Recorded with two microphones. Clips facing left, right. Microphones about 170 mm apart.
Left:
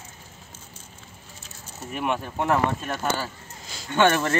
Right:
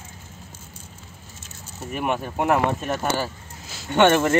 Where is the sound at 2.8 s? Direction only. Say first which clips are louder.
Right 3 dB; 20° right (ahead or behind).